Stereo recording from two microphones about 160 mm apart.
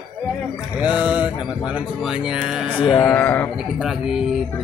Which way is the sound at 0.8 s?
10° right (ahead or behind).